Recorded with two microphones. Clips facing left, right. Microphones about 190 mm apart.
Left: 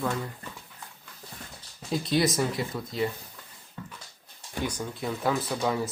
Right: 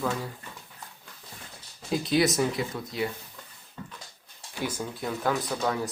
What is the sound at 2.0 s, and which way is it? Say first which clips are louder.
Speech: right 1 dB; centre (ahead or behind).